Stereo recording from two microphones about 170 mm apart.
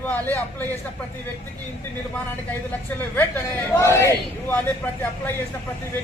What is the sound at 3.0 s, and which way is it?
A man's voice, 15° left (ahead or behind).